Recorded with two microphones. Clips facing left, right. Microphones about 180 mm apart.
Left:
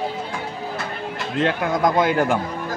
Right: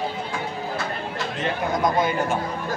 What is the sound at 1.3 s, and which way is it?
Speech, 90° left.